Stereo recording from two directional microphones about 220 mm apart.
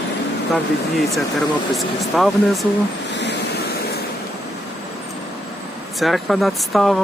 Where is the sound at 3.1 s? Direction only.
50° left (ahead or behind).